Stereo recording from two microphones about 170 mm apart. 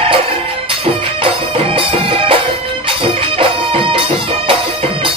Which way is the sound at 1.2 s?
30° right (ahead or behind).